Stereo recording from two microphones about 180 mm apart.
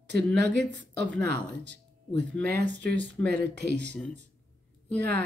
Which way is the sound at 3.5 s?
70° right (ahead or behind).